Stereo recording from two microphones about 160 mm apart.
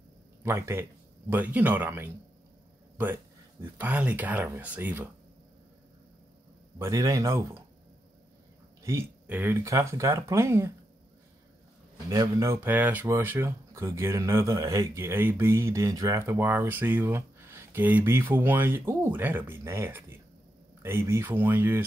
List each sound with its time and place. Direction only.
0.4 s speech: 15° right (ahead or behind)
3.7 s speech: 10° right (ahead or behind)
6.8 s speech: 20° right (ahead or behind)
8.8 s speech: 15° right (ahead or behind)
12.1 s speech: 20° right (ahead or behind)